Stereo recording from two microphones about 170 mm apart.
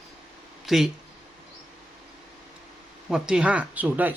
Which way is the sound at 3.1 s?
5° right (ahead or behind).